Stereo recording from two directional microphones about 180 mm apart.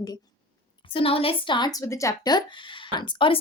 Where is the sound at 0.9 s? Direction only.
30° left (ahead or behind).